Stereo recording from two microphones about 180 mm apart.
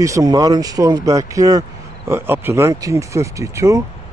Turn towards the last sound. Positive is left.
turn(degrees=-15)  # may be behind; listen again after turning